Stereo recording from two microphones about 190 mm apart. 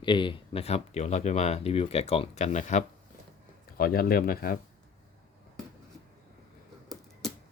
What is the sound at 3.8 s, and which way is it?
Speech, 50° left (ahead or behind).